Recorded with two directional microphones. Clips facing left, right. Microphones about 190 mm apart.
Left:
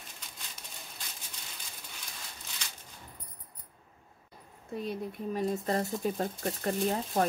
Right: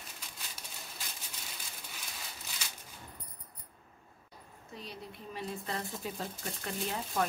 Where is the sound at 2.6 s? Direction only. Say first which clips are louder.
Even; 5° right (ahead or behind).